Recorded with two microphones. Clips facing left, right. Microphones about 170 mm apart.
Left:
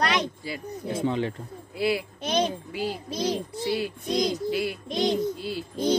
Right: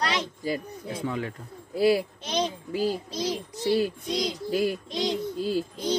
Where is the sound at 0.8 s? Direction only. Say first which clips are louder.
Left 6 dB; 25° left (ahead or behind).